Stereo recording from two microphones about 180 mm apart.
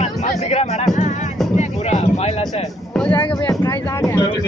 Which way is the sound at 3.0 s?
10° left (ahead or behind).